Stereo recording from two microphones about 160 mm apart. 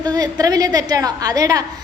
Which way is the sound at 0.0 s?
25° right (ahead or behind).